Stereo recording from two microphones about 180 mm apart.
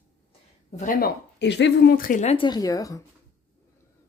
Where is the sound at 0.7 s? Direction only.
45° left (ahead or behind).